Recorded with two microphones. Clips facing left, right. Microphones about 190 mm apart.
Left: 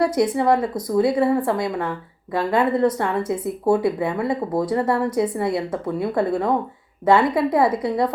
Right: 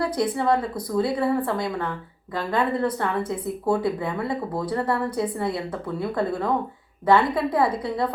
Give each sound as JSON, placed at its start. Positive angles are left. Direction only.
{"t": 0.0, "sound": "a woman's voice", "side_deg": 20}